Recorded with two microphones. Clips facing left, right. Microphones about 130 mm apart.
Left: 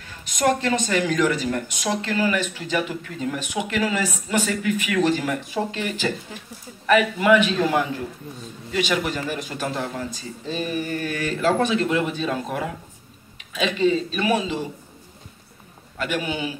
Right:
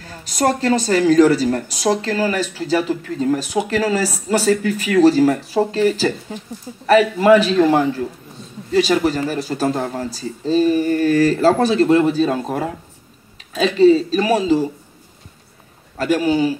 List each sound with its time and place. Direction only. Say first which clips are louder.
0.0 s speech: right 3 dB; 35° right (ahead or behind)
16.0 s speech: right 10 dB; 35° right (ahead or behind)